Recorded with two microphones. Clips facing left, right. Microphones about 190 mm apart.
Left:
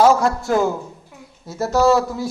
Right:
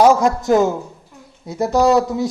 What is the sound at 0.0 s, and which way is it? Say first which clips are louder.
A man's voice: right 2 dB; 15° right (ahead or behind).